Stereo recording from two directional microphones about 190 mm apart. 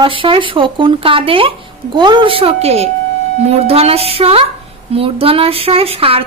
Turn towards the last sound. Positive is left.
turn(degrees=-30)  # may be behind; listen again after turning